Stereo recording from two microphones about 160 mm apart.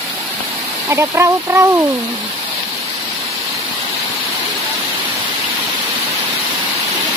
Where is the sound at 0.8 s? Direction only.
15° right (ahead or behind).